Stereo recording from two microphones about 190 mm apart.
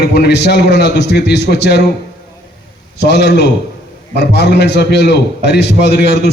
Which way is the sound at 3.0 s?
60° left (ahead or behind).